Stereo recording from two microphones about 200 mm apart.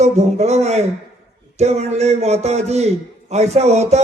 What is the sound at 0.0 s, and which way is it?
A man's voice, 35° right (ahead or behind).